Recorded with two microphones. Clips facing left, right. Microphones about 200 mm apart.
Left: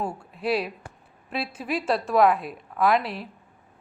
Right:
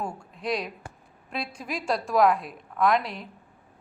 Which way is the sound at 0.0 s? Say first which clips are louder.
Left 4 dB; 5° left (ahead or behind).